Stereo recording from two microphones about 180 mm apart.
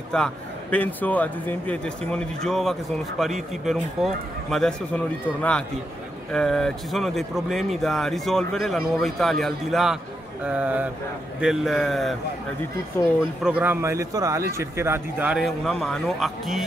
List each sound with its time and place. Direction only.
0.1 s a man's voice: 5° left (ahead or behind)
13.0 s speech: 15° left (ahead or behind)
13.4 s a man's voice: 10° right (ahead or behind)